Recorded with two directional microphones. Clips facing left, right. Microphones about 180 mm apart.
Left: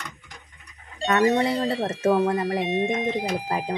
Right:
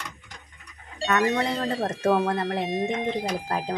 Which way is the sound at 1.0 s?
25° left (ahead or behind).